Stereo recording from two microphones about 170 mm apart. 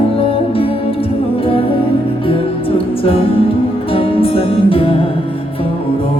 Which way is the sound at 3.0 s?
35° left (ahead or behind).